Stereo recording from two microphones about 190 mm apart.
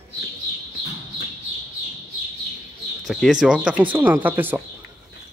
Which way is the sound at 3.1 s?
Centre (ahead or behind).